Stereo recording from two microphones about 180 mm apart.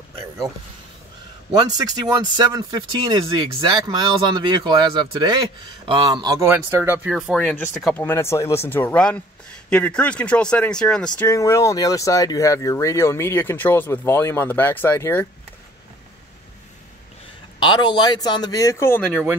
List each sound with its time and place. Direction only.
1.5 s speech: 20° right (ahead or behind); by 8.0 s centre (ahead or behind)
8.0 s speech: 15° left (ahead or behind)
11.1 s speech: 15° left (ahead or behind)
17.6 s speech: 25° left (ahead or behind)